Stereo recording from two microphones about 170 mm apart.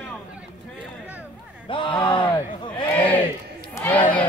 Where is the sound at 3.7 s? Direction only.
10° left (ahead or behind).